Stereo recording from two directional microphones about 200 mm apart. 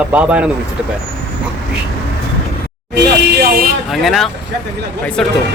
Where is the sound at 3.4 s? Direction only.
50° right (ahead or behind).